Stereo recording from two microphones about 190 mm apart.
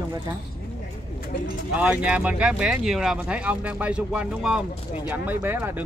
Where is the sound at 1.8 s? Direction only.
5° right (ahead or behind).